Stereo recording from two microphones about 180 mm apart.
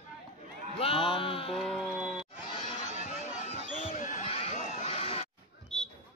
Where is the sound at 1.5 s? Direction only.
Centre (ahead or behind).